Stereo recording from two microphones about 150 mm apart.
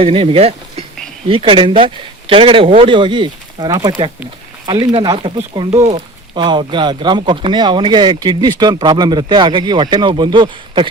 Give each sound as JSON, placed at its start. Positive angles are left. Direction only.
{"t": 0.0, "sound": "speech", "side_deg": -35}